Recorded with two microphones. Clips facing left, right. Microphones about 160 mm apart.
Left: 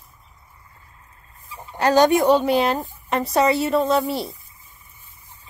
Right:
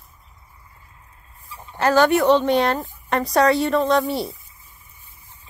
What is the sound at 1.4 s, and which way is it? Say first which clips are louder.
Chicken: even; 15° left (ahead or behind).